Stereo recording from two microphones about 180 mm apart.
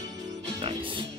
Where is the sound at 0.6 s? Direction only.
30° right (ahead or behind).